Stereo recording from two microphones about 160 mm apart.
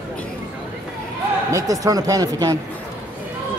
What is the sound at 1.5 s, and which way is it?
Speech, 20° right (ahead or behind).